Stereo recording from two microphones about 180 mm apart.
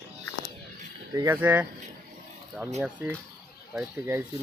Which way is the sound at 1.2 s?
10° right (ahead or behind).